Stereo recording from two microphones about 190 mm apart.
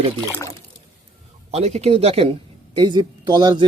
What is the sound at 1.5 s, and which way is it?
Speech, 35° right (ahead or behind).